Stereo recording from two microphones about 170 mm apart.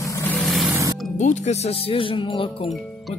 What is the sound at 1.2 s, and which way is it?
Speech, 40° left (ahead or behind).